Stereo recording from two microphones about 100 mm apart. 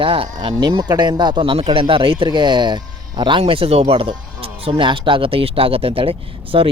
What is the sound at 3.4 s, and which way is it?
Speech, 70° right (ahead or behind).